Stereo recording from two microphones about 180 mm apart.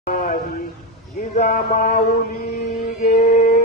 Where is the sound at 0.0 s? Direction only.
50° left (ahead or behind).